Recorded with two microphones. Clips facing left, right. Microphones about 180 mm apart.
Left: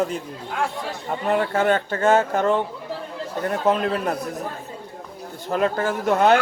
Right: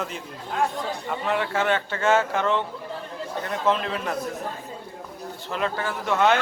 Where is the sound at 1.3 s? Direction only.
40° left (ahead or behind).